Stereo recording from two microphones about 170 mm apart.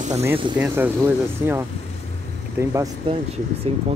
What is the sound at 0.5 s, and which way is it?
Speech, 10° right (ahead or behind).